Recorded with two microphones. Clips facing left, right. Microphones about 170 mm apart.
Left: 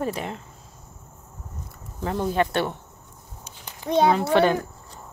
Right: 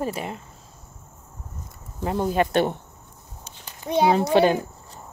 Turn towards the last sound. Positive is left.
turn(degrees=-20)  # may be behind; listen again after turning